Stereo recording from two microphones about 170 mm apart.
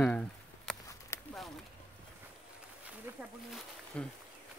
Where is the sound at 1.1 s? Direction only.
15° left (ahead or behind).